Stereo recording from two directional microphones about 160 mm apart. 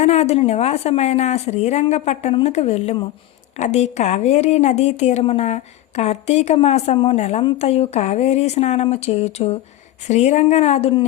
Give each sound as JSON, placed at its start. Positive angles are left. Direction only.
{"t": 0.0, "sound": "a woman's voice", "side_deg": 45}